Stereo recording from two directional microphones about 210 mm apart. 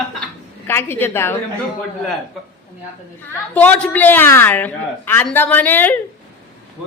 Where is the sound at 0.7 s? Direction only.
10° left (ahead or behind).